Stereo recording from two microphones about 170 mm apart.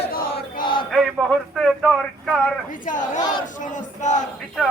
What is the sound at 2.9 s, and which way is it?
Battle cry, 50° left (ahead or behind).